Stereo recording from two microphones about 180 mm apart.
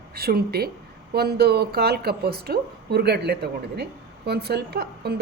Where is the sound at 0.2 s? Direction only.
60° right (ahead or behind).